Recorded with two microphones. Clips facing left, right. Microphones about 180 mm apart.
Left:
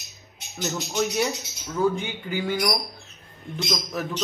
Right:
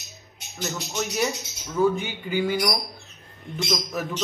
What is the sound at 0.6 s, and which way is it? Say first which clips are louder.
Speech: left 3 dB; centre (ahead or behind).